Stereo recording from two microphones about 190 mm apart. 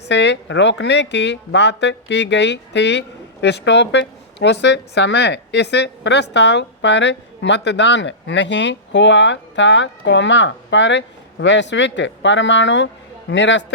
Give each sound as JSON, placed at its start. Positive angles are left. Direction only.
{"t": 0.1, "sound": "a woman's voice", "side_deg": 70}